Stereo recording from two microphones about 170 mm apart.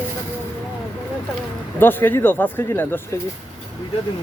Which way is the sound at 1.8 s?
10° left (ahead or behind).